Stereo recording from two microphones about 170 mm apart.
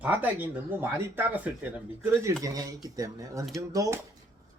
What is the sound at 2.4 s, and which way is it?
A man's voice, 20° right (ahead or behind).